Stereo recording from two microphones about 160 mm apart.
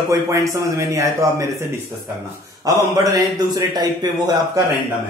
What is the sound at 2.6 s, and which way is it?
A man's voice, 20° right (ahead or behind).